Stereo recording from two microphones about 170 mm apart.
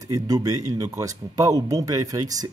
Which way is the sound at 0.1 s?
20° right (ahead or behind).